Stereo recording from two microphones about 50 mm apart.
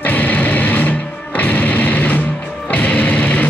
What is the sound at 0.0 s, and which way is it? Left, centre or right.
Music, left.